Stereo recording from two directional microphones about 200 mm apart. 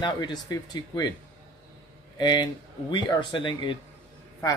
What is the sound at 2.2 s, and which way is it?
Speech, 20° left (ahead or behind).